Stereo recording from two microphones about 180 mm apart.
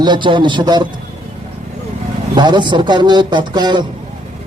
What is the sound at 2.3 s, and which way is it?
A man's voice, 25° right (ahead or behind).